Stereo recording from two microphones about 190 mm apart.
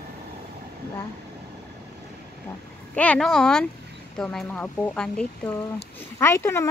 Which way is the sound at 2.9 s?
5° left (ahead or behind).